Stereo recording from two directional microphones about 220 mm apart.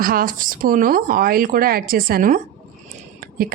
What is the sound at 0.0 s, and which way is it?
A woman's voice, 40° right (ahead or behind).